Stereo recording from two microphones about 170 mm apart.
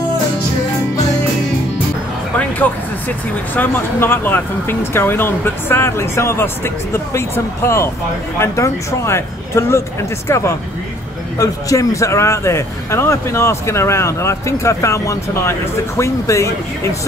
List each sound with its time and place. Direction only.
3.5 s speech: 10° left (ahead or behind)